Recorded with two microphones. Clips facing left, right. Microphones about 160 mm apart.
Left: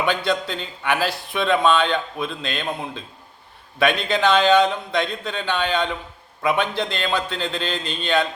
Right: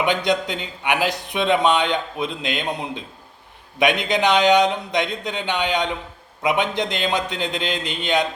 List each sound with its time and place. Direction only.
0.0 s a man's voice: 20° right (ahead or behind)